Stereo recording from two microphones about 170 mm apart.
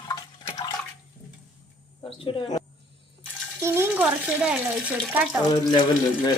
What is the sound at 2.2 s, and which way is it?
Speech, 30° left (ahead or behind).